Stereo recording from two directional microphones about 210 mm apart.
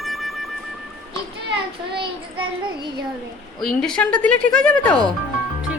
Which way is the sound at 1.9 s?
25° right (ahead or behind).